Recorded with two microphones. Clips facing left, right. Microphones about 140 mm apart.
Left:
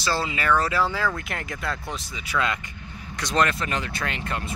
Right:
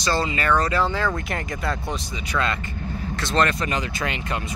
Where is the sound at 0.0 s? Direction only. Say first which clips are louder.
Right 3 dB; 5° left (ahead or behind).